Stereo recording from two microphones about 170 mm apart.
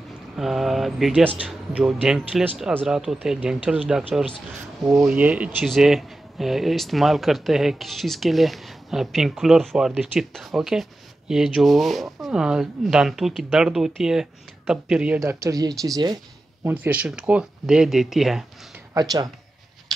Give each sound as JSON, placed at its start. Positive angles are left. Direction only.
{"t": 0.4, "sound": "speech", "side_deg": 0}
{"t": 5.0, "sound": "speech", "side_deg": -10}
{"t": 15.1, "sound": "speech", "side_deg": -15}
{"t": 18.9, "sound": "speech", "side_deg": -20}